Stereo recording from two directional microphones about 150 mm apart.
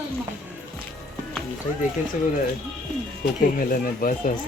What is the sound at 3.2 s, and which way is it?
Speech, 65° left (ahead or behind).